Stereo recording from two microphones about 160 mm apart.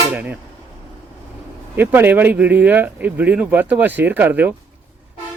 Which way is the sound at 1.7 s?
10° right (ahead or behind).